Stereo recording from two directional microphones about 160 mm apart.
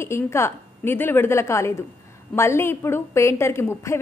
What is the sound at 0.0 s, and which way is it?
A woman's voice, 15° left (ahead or behind).